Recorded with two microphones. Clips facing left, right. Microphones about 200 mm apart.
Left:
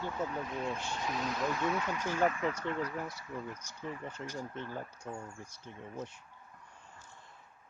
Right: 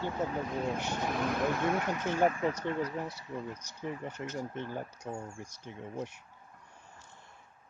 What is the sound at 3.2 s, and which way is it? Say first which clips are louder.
Speech: right 2 dB; 20° right (ahead or behind).